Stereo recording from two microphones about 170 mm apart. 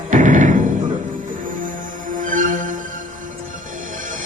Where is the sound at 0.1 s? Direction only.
50° right (ahead or behind).